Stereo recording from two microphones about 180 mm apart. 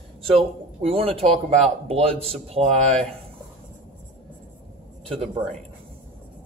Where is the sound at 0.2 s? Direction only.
30° right (ahead or behind).